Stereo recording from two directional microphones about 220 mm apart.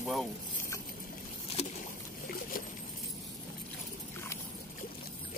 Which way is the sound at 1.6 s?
30° left (ahead or behind).